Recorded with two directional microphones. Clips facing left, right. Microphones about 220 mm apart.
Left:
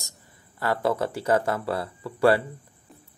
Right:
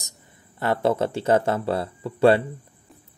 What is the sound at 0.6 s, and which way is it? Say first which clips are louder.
Speech: right 3 dB; 25° right (ahead or behind).